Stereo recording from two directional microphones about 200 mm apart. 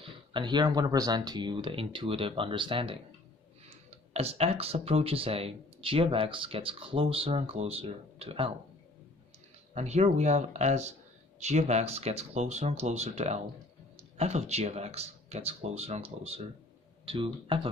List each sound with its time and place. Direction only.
0.0 s speech: 25° right (ahead or behind)
4.1 s speech: 30° right (ahead or behind)
9.8 s speech: 35° right (ahead or behind)